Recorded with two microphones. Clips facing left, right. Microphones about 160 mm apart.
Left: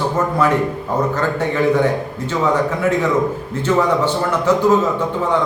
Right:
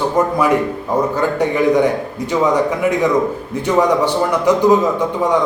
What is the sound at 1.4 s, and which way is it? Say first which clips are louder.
A man's voice: right 2 dB; 15° right (ahead or behind).